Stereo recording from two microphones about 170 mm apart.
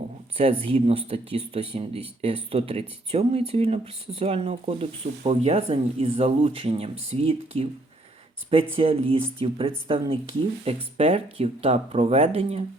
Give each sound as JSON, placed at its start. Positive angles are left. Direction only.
{"t": 0.3, "sound": "speech", "side_deg": -35}
{"t": 8.7, "sound": "speech", "side_deg": -35}